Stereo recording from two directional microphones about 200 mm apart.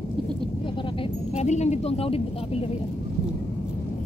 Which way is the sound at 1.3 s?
35° left (ahead or behind).